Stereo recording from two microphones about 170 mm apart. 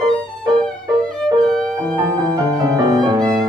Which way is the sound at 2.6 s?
25° right (ahead or behind).